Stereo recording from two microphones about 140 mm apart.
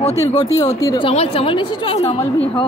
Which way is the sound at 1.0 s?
45° left (ahead or behind).